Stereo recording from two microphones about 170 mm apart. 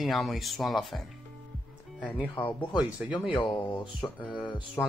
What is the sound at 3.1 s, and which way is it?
Speech, 30° left (ahead or behind).